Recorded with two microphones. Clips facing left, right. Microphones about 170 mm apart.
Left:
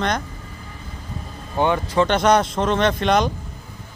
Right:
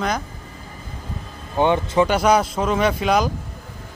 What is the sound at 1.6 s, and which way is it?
Speech, 15° right (ahead or behind).